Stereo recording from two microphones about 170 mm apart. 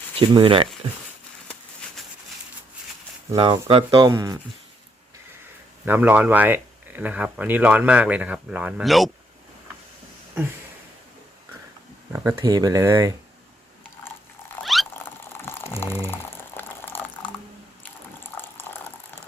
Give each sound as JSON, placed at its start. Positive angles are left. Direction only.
{"t": 0.2, "sound": "speech", "side_deg": -30}
{"t": 3.3, "sound": "speech", "side_deg": -30}
{"t": 5.8, "sound": "speech", "side_deg": -10}
{"t": 12.1, "sound": "speech", "side_deg": -20}
{"t": 14.6, "sound": "cat", "side_deg": 0}
{"t": 15.0, "sound": "a sound", "side_deg": 15}
{"t": 16.0, "sound": "boiling", "side_deg": 15}